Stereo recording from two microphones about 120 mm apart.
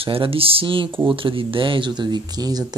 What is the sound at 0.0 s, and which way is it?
Speech, 50° right (ahead or behind).